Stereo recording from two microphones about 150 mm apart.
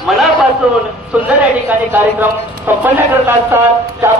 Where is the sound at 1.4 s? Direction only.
10° right (ahead or behind).